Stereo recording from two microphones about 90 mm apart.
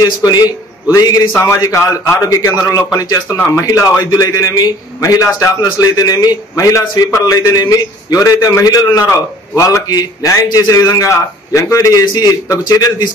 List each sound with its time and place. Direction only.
0.0 s speech: 50° left (ahead or behind)
1.3 s a man's voice: 25° left (ahead or behind)
1.6 s a man's voice: 40° left (ahead or behind)